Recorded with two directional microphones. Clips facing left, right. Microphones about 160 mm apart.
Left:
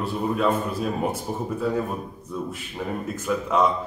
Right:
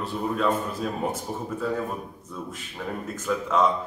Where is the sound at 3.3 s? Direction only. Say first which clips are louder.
Left 1 dB; 5° left (ahead or behind).